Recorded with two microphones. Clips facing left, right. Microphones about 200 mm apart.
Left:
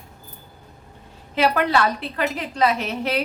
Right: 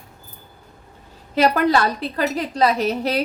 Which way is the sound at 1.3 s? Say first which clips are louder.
Right 3 dB; 40° right (ahead or behind).